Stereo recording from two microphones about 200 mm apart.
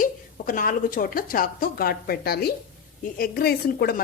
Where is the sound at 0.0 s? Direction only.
45° left (ahead or behind).